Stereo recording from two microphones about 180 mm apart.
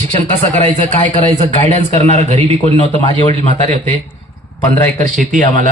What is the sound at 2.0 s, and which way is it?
Speech, 40° right (ahead or behind).